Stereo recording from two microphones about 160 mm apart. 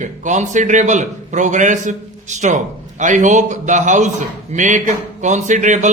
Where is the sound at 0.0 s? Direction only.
50° right (ahead or behind).